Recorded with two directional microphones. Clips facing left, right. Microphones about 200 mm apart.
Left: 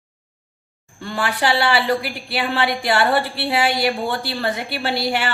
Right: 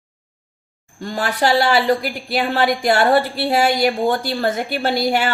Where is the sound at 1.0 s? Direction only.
40° right (ahead or behind).